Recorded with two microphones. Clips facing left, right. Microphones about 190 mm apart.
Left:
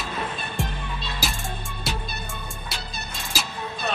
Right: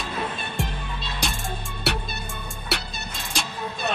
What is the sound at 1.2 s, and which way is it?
Music, 5° left (ahead or behind).